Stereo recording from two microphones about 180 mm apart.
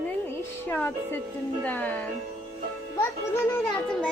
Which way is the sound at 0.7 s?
10° left (ahead or behind).